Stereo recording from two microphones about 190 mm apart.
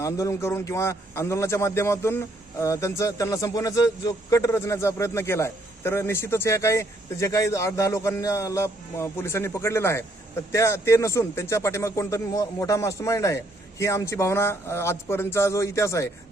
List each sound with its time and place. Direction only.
0.0 s a man's voice: 15° left (ahead or behind)